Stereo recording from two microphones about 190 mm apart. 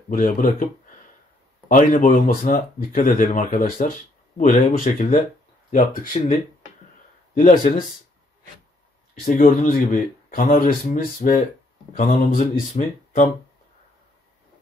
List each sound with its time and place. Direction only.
0.1 s speech: 45° left (ahead or behind)
1.8 s speech: 45° left (ahead or behind)
9.2 s speech: 45° left (ahead or behind)